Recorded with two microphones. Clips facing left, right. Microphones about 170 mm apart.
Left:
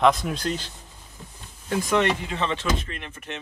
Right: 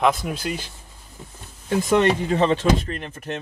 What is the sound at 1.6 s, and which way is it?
Speech, 30° right (ahead or behind).